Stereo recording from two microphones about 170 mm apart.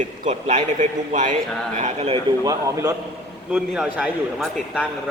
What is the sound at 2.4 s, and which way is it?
Speech, 20° right (ahead or behind).